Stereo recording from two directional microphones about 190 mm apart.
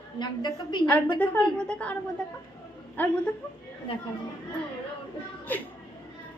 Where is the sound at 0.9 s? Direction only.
10° left (ahead or behind).